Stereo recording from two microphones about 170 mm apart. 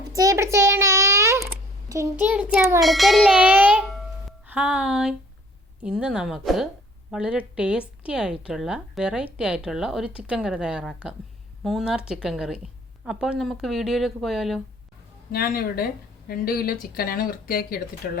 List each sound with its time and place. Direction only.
0.1 s a sound: 20° right (ahead or behind)
1.9 s a child's voice: 15° right (ahead or behind)
2.8 s music: centre (ahead or behind)
4.4 s a child's voice: 5° right (ahead or behind)
15.3 s speech: 65° left (ahead or behind)